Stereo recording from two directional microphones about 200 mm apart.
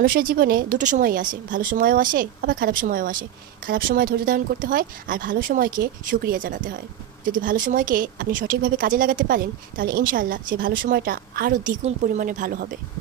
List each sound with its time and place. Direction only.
0.0 s a woman's voice: 45° right (ahead or behind)